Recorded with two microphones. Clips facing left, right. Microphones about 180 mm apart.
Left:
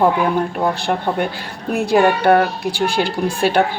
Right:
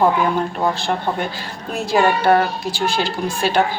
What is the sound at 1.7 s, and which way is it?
Speech, 60° left (ahead or behind).